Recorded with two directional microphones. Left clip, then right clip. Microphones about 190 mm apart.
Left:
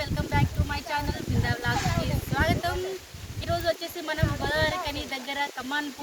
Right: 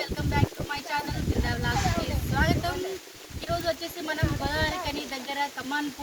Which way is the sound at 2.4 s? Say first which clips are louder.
Left 1 dB; 20° left (ahead or behind).